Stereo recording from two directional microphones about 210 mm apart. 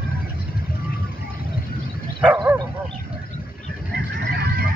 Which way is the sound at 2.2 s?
5° right (ahead or behind).